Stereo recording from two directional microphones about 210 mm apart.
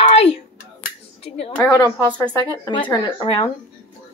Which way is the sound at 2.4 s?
20° left (ahead or behind).